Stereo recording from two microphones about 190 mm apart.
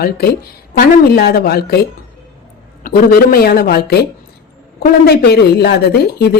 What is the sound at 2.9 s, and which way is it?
A woman's voice, 50° left (ahead or behind).